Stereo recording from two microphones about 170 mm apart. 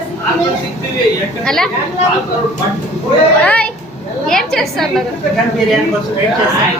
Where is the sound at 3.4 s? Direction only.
10° left (ahead or behind).